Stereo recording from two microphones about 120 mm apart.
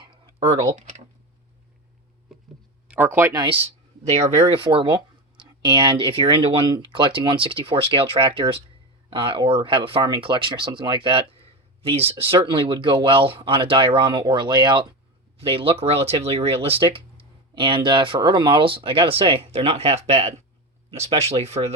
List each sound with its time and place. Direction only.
0.0 s typing: 45° right (ahead or behind)
2.9 s speech: 15° right (ahead or behind)
3.3 s speech: 40° right (ahead or behind)
4.1 s speech: 55° right (ahead or behind); by 14.8 s 40° right (ahead or behind)
15.4 s speech: 50° right (ahead or behind)